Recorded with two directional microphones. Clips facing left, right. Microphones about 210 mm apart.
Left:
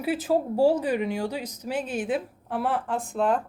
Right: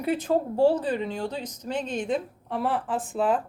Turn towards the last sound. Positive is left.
turn(degrees=-5)  # may be behind; listen again after turning